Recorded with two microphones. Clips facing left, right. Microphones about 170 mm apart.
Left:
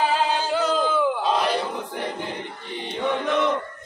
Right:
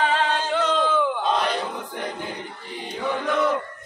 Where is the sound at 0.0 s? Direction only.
10° left (ahead or behind).